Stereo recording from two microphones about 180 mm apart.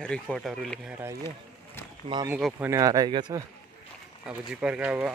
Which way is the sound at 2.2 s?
10° right (ahead or behind).